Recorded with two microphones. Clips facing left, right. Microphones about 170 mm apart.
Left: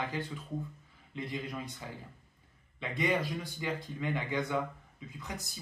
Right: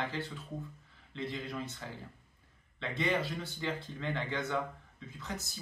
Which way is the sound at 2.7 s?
15° left (ahead or behind).